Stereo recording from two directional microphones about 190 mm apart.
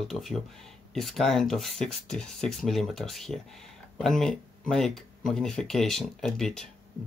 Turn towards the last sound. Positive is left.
turn(degrees=0)  # may be behind; listen again after turning